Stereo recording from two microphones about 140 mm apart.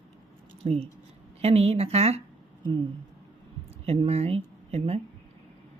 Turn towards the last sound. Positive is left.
turn(degrees=-45)  # may be behind; listen again after turning